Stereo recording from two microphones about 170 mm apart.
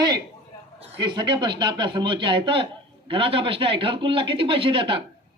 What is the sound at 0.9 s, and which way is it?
Speech, 25° right (ahead or behind).